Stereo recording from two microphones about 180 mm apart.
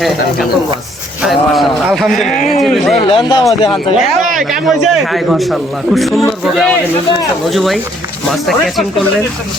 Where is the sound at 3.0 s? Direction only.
25° left (ahead or behind).